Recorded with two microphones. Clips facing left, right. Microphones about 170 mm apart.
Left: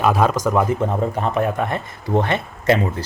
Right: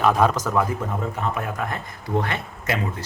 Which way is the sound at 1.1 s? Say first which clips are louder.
Left 7 dB; 30° left (ahead or behind).